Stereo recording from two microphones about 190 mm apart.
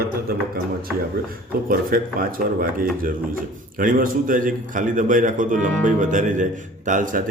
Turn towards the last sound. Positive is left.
turn(degrees=-45)  # may be behind; listen again after turning